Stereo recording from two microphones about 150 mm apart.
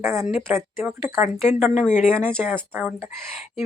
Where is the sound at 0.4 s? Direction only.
15° right (ahead or behind).